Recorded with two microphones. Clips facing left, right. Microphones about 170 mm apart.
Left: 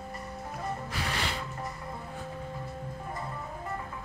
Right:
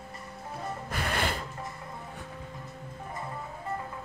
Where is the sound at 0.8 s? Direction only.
50° right (ahead or behind).